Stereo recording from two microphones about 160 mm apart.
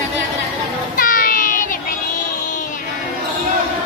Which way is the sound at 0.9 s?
60° left (ahead or behind).